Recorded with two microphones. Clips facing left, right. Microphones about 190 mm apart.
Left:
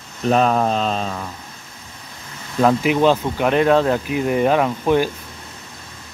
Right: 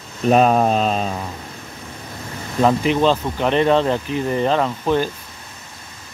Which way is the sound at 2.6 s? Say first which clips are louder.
Left 1 dB; 5° left (ahead or behind).